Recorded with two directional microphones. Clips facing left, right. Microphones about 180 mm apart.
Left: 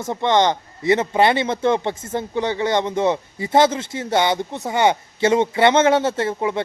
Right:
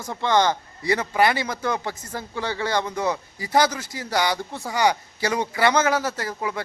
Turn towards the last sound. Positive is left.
turn(degrees=25)  # may be behind; listen again after turning